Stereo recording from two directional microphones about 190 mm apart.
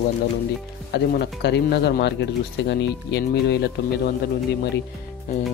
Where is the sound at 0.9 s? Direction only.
60° left (ahead or behind).